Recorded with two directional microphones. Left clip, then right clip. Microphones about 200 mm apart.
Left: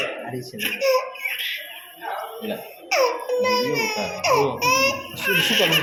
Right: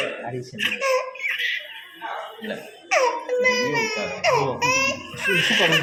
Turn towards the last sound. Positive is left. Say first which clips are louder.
# even
turn(degrees=-15)  # may be behind; listen again after turning